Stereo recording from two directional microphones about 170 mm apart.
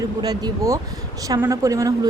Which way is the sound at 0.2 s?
25° right (ahead or behind).